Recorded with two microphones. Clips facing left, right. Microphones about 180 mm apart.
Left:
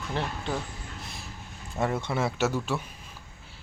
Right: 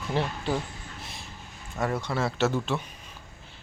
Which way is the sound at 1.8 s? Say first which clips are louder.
Even; 20° left (ahead or behind).